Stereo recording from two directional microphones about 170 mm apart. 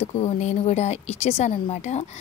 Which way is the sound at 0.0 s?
40° left (ahead or behind).